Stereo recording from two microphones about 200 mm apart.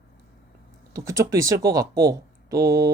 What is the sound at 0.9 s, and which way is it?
Speech, 15° right (ahead or behind).